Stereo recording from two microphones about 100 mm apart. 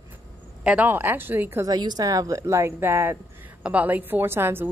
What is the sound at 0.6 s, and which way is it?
Speech, 15° right (ahead or behind).